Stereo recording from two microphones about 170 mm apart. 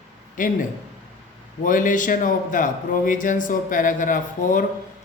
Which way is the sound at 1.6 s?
50° left (ahead or behind).